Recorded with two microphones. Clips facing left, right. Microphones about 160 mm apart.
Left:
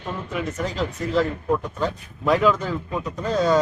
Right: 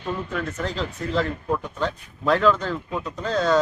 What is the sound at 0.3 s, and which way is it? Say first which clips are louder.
Speech: left 6 dB; 5° left (ahead or behind).